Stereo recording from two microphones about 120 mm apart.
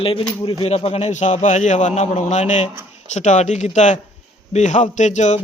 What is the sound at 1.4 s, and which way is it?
A man's voice, 85° left.